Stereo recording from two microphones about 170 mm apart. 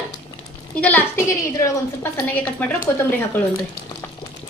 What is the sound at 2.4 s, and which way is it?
Speech, 10° left (ahead or behind).